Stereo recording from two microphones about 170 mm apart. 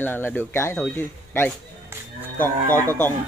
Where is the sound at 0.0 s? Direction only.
10° left (ahead or behind).